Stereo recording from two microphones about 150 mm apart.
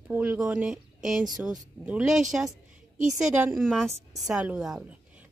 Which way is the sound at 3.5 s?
Centre (ahead or behind).